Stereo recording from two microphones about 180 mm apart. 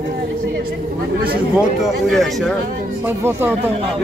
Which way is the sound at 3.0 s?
10° right (ahead or behind).